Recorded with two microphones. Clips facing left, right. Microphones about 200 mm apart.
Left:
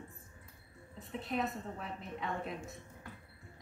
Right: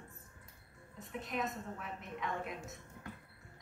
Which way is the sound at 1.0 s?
30° left (ahead or behind).